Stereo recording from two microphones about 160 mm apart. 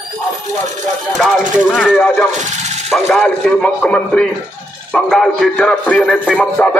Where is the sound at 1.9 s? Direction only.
10° left (ahead or behind).